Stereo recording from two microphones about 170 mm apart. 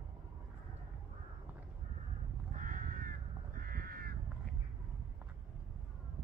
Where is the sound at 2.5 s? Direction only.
45° right (ahead or behind).